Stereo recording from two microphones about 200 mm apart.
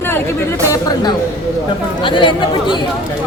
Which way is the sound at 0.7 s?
20° left (ahead or behind).